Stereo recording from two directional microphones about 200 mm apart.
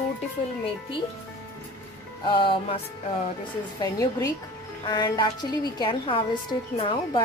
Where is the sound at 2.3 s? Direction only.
25° left (ahead or behind).